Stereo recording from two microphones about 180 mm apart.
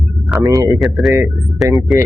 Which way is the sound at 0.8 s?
Centre (ahead or behind).